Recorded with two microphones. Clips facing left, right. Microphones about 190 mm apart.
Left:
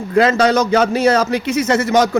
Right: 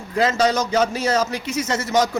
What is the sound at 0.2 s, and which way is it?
A man's voice, 60° left (ahead or behind).